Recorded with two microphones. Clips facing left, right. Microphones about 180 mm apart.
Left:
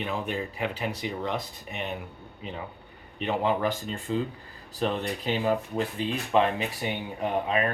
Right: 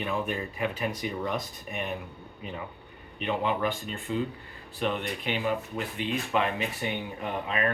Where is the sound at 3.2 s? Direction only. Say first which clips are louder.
Left 2 dB; 35° left (ahead or behind).